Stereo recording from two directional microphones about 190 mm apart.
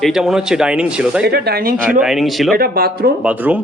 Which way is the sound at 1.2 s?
55° right (ahead or behind).